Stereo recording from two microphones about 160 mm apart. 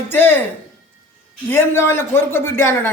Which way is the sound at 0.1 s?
15° left (ahead or behind).